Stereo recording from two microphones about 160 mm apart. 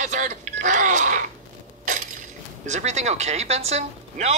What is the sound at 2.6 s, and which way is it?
Speech, 45° right (ahead or behind).